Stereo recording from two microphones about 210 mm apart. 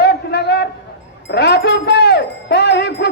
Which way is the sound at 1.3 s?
55° left (ahead or behind).